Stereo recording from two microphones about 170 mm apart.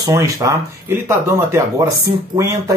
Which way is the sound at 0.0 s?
20° right (ahead or behind).